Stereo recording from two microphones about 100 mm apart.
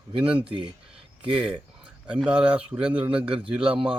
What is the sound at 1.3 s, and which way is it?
Speech, 10° right (ahead or behind).